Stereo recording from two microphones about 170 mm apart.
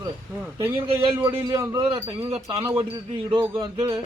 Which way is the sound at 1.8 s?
30° right (ahead or behind).